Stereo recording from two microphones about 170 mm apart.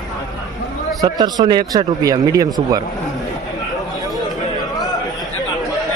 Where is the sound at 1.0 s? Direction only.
25° right (ahead or behind).